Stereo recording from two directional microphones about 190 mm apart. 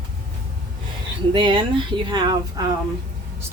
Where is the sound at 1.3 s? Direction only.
25° right (ahead or behind).